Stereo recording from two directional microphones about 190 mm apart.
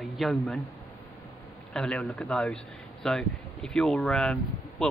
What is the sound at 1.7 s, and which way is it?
A man's voice, 5° left (ahead or behind).